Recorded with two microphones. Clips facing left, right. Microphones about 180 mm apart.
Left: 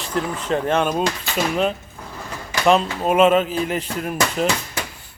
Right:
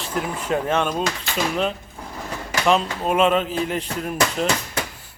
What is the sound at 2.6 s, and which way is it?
Speech, centre (ahead or behind).